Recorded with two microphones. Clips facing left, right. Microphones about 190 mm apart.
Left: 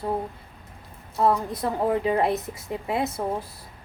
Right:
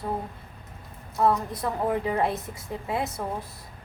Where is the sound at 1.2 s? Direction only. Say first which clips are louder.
Left 1 dB; 30° left (ahead or behind).